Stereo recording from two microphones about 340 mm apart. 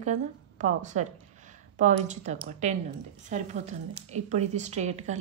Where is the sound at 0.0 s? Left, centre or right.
Right.